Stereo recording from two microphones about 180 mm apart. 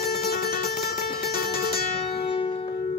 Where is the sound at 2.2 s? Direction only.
35° left (ahead or behind).